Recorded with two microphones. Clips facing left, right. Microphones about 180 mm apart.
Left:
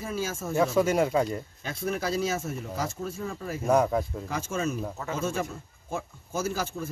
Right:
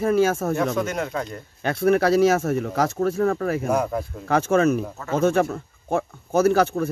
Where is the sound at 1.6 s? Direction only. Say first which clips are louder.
Right 14 dB; 65° right (ahead or behind).